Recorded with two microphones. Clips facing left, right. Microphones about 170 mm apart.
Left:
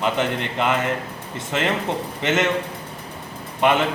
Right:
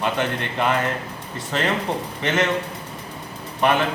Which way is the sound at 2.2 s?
20° left (ahead or behind).